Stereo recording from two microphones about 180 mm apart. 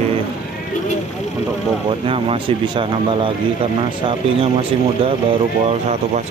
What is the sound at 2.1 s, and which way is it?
Speech, 30° right (ahead or behind).